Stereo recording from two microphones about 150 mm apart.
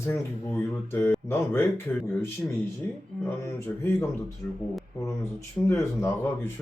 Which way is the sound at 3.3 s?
15° left (ahead or behind).